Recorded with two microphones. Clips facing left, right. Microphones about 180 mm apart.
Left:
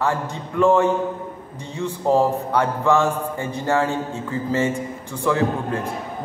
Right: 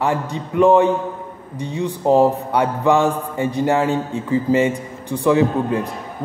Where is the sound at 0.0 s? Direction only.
15° right (ahead or behind).